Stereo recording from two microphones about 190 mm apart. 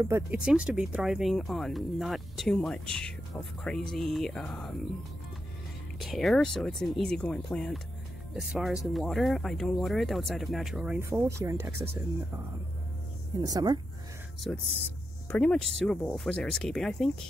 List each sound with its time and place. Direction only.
0.0 s speech: 10° right (ahead or behind)
5.9 s speech: centre (ahead or behind)
13.4 s speech: 20° right (ahead or behind)
14.5 s speech: centre (ahead or behind)